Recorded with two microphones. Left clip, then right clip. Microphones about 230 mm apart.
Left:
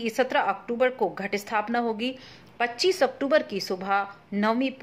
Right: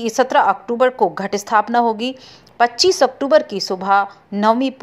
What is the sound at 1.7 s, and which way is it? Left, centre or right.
A woman's voice, centre.